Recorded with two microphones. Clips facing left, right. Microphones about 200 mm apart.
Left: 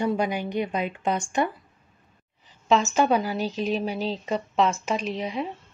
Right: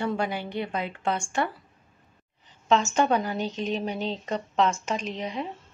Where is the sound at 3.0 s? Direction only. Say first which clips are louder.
Left 2 dB; 5° left (ahead or behind).